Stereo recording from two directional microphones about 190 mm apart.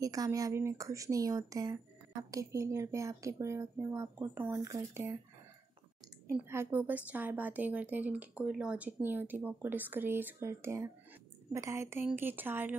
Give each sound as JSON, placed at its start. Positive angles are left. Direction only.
{"t": 0.0, "sound": "a woman's voice", "side_deg": -20}
{"t": 6.2, "sound": "a woman's voice", "side_deg": -15}